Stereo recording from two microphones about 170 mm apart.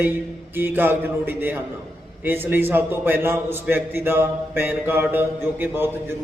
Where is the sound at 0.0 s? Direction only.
10° right (ahead or behind).